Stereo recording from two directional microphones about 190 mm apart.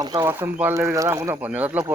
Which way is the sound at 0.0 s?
20° right (ahead or behind).